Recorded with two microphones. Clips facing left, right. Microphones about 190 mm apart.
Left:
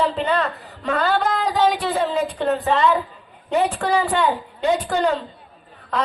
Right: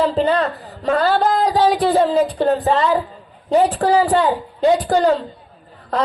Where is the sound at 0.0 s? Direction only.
35° right (ahead or behind).